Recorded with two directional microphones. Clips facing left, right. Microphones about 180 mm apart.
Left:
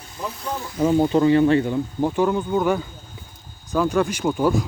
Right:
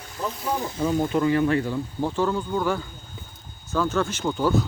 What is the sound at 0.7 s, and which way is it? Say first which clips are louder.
Speech: left 7 dB; 30° left (ahead or behind).